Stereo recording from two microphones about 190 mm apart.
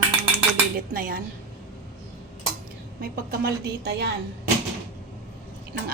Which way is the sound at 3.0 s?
55° right (ahead or behind).